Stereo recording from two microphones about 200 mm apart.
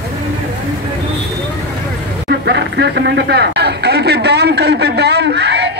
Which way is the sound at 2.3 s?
55° right (ahead or behind).